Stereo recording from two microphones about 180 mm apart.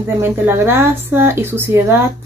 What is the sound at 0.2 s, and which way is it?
Speech, 15° right (ahead or behind).